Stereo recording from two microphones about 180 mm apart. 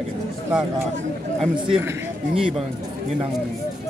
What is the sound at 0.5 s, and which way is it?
Speech, 10° right (ahead or behind).